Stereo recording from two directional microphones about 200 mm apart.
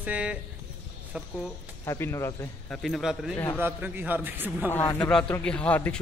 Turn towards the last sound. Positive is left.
turn(degrees=5)  # may be behind; listen again after turning